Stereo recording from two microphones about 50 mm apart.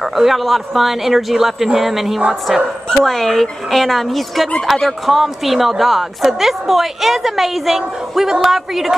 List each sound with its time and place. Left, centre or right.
0.0 s a woman's voice: centre
3.0 s a woman's voice: centre